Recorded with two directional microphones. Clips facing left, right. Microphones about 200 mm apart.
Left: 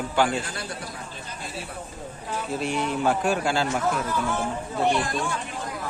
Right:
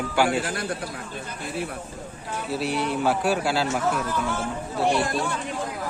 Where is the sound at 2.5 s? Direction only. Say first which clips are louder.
Right 1 dB; 5° right (ahead or behind).